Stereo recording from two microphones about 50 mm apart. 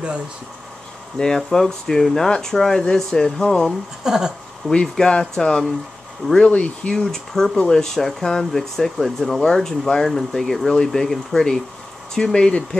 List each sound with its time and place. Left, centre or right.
1.1 s speech: centre
4.0 s speech: centre
4.6 s speech: centre
6.5 s speech: left
6.9 s speech: centre